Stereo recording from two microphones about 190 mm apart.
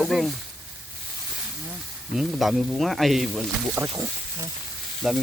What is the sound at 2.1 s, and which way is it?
Speech, centre (ahead or behind).